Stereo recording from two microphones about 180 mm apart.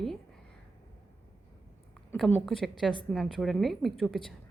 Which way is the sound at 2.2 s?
5° left (ahead or behind).